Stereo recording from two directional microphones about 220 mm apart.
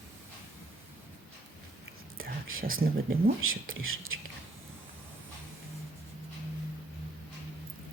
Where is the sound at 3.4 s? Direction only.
65° right (ahead or behind).